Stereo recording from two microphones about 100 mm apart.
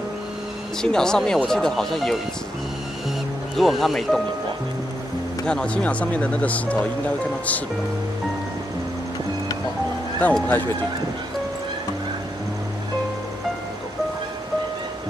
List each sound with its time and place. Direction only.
0.8 s speech: 5° left (ahead or behind)
3.5 s speech: centre (ahead or behind)
5.4 s speech: 10° left (ahead or behind)
10.2 s speech: 15° left (ahead or behind)